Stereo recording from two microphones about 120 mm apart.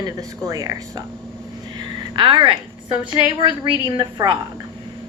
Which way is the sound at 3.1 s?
40° right (ahead or behind).